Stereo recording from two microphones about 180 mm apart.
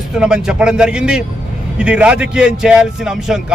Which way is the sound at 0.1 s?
5° right (ahead or behind).